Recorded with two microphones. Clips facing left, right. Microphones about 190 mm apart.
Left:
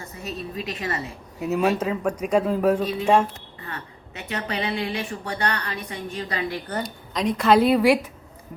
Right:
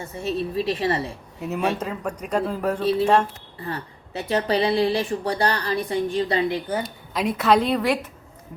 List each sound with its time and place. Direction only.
0.0 s speech: 30° right (ahead or behind)
1.4 s speech: centre (ahead or behind)
3.7 s speech: 35° right (ahead or behind)
6.7 s speech: 5° right (ahead or behind)